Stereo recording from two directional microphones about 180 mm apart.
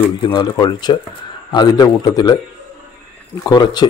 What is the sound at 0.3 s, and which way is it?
Speech, 25° left (ahead or behind).